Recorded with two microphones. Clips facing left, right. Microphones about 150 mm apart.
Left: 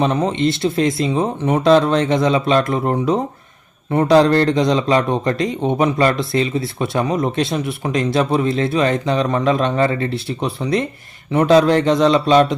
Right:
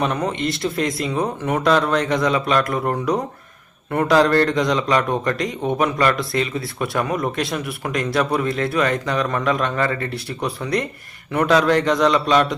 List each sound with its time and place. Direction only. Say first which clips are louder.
0.0 s speech: left 5 dB; 25° left (ahead or behind)